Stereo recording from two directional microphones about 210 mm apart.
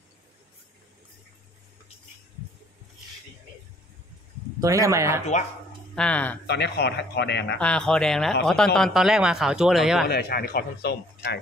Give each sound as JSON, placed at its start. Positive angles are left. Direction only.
{"t": 4.6, "sound": "speech", "side_deg": -15}
{"t": 5.9, "sound": "speech", "side_deg": 5}
{"t": 6.4, "sound": "a man's voice", "side_deg": 50}
{"t": 7.5, "sound": "speech", "side_deg": 5}
{"t": 10.0, "sound": "a man's voice", "side_deg": 45}